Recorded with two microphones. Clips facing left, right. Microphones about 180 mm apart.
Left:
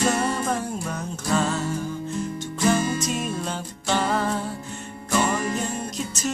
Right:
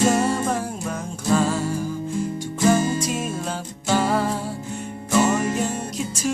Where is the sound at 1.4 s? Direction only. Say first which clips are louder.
Even; 10° right (ahead or behind).